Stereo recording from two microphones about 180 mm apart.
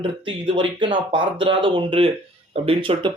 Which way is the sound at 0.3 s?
30° right (ahead or behind).